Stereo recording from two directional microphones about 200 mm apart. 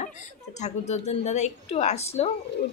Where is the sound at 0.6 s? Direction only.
35° left (ahead or behind).